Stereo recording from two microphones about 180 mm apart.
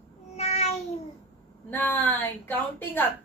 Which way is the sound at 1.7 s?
10° left (ahead or behind).